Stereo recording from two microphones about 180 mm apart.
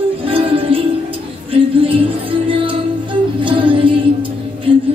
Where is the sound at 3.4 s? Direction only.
30° right (ahead or behind).